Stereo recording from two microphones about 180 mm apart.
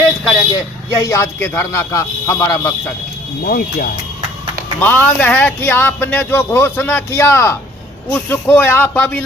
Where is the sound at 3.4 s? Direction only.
55° left (ahead or behind).